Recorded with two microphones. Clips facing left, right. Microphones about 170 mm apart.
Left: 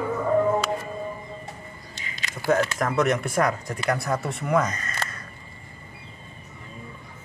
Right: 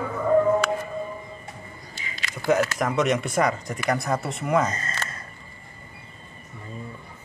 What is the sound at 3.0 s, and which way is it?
Speech, centre (ahead or behind).